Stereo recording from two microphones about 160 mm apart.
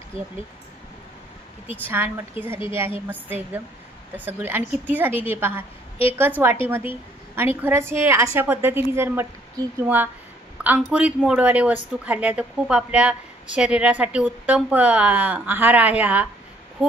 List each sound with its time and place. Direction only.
1.9 s a woman's voice: 15° right (ahead or behind)
7.3 s a woman's voice: 15° right (ahead or behind)
10.6 s a woman's voice: 10° right (ahead or behind)